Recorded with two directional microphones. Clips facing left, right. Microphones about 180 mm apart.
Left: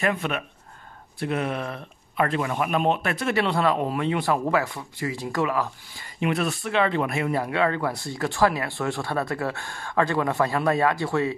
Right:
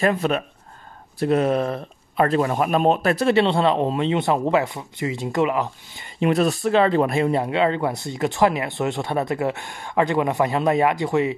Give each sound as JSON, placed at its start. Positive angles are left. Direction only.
{"t": 0.0, "sound": "a man's voice", "side_deg": -35}
{"t": 6.2, "sound": "speech", "side_deg": -35}